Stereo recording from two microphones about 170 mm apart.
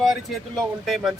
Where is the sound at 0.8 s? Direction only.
Centre (ahead or behind).